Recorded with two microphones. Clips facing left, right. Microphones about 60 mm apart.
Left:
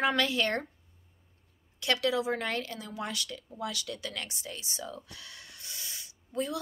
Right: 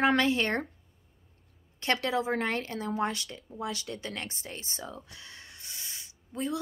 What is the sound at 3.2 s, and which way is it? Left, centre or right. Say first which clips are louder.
Speech: right 1 dB; right.